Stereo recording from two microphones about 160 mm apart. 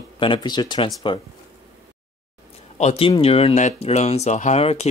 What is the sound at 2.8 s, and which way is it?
Speech, 40° left (ahead or behind).